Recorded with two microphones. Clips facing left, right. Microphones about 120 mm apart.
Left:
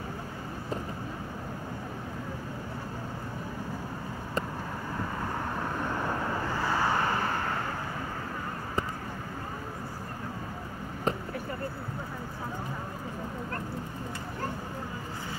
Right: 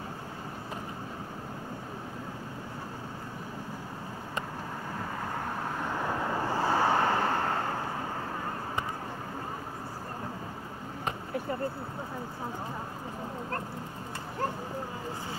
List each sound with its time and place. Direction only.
6.4 s vehicle: 35° right (ahead or behind)